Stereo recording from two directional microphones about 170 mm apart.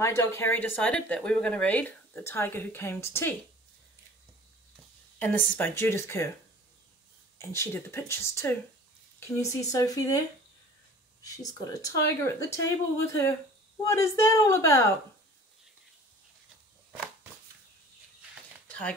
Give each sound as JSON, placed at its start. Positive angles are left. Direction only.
{"t": 0.0, "sound": "speech", "side_deg": 15}
{"t": 5.2, "sound": "speech", "side_deg": 10}
{"t": 7.3, "sound": "speech", "side_deg": 15}
{"t": 11.2, "sound": "speech", "side_deg": 20}
{"t": 18.7, "sound": "a sound", "side_deg": 5}